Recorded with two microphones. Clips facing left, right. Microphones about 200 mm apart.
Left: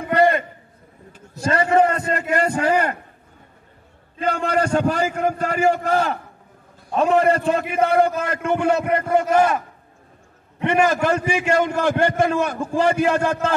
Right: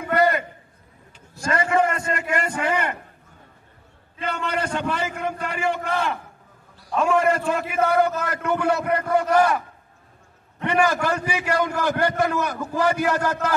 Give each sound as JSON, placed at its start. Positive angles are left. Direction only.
{"t": 0.1, "sound": "a sound", "side_deg": 30}
{"t": 1.4, "sound": "a man's voice", "side_deg": 35}
{"t": 4.2, "sound": "a man's voice", "side_deg": 45}
{"t": 10.6, "sound": "a man's voice", "side_deg": 25}